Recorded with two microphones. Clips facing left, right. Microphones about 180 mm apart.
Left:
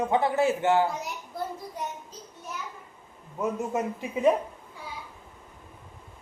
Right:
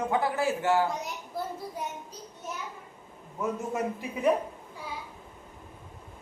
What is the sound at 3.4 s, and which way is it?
Speech, 20° left (ahead or behind).